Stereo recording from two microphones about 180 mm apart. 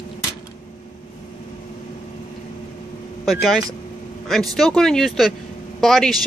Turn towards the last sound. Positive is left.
turn(degrees=0)  # may be behind; listen again after turning